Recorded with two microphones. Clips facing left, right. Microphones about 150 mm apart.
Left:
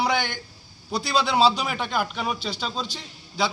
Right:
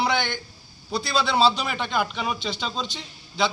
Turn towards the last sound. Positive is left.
turn(degrees=5)  # may be behind; listen again after turning